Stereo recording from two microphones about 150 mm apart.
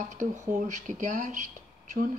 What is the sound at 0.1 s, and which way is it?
A woman's voice, 55° right (ahead or behind).